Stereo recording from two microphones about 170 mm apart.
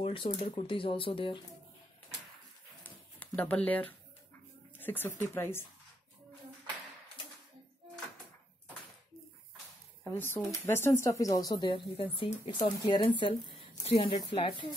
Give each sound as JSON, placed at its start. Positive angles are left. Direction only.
{"t": 0.0, "sound": "speech", "side_deg": 35}
{"t": 3.3, "sound": "speech", "side_deg": 10}
{"t": 10.1, "sound": "speech", "side_deg": 10}